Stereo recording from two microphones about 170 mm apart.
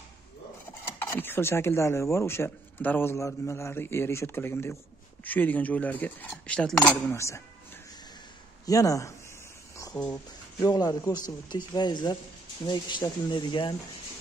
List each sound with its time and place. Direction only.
1.0 s speech: 10° left (ahead or behind)
8.6 s speech: 20° left (ahead or behind)
10.1 s speech: 20° left (ahead or behind)